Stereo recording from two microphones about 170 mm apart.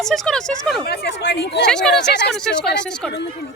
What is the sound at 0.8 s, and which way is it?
Speech, 75° left (ahead or behind).